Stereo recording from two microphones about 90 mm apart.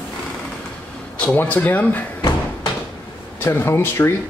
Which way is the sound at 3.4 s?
30° left (ahead or behind).